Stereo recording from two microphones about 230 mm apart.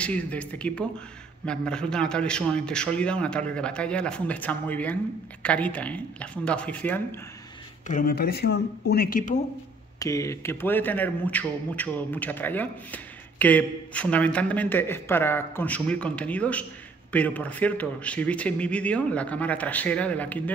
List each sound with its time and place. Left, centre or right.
0.0 s a man's voice: centre
7.9 s speech: left
9.9 s a man's voice: centre